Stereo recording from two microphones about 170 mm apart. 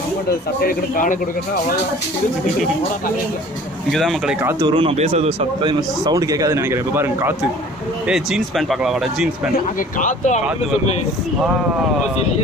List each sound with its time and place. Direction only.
0.6 s a man's voice: 55° left (ahead or behind)
3.9 s speech: centre (ahead or behind)
4.4 s speech: 15° right (ahead or behind)
4.6 s a man's voice: 30° right (ahead or behind); by 7.3 s 15° right (ahead or behind)
8.1 s speech: centre (ahead or behind)
9.8 s speech: 50° left (ahead or behind)